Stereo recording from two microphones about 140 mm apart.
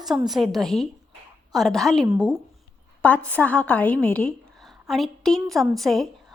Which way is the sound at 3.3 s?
10° left (ahead or behind).